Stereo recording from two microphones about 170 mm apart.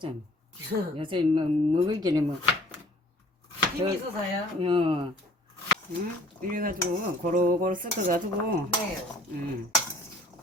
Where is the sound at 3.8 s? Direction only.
25° right (ahead or behind).